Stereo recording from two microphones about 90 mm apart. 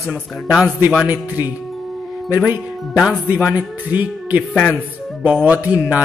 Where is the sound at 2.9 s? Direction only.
10° right (ahead or behind).